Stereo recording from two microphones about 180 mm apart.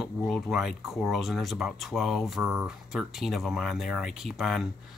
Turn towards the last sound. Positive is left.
turn(degrees=0)  # may be behind; listen again after turning